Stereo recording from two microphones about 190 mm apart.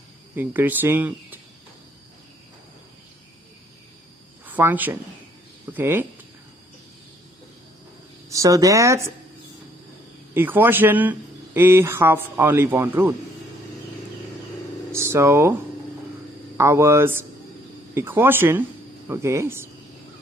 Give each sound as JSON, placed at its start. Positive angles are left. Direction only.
{"t": 0.4, "sound": "speech", "side_deg": -10}
{"t": 4.5, "sound": "speech", "side_deg": -10}
{"t": 8.3, "sound": "speech", "side_deg": -15}
{"t": 10.3, "sound": "speech", "side_deg": -10}
{"t": 14.9, "sound": "a sound", "side_deg": -15}
{"t": 16.5, "sound": "speech", "side_deg": -15}